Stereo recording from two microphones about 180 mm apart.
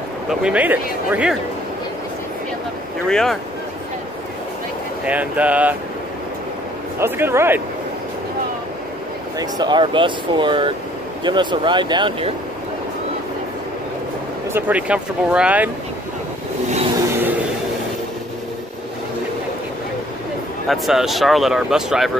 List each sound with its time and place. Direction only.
0.3 s speech: 5° right (ahead or behind)
3.1 s speech: 5° left (ahead or behind)
5.0 s speech: 10° right (ahead or behind)
7.0 s speech: 15° right (ahead or behind)
9.4 s speech: 25° right (ahead or behind)
14.5 s speech: 10° right (ahead or behind)
20.6 s speech: centre (ahead or behind)